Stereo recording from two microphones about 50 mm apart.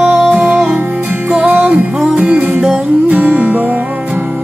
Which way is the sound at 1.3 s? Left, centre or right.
Right.